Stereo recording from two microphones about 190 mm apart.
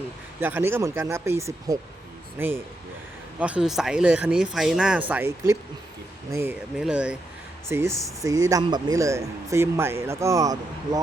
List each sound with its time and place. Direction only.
0.3 s speech: 10° right (ahead or behind)